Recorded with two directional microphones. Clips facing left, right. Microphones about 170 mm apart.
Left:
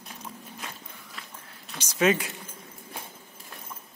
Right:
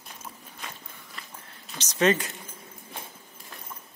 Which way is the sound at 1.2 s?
Centre (ahead or behind).